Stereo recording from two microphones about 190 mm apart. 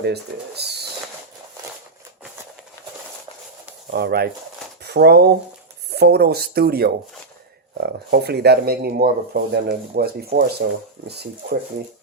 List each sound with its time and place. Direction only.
0.0 s speech: 60° right (ahead or behind)
3.9 s speech: 55° right (ahead or behind)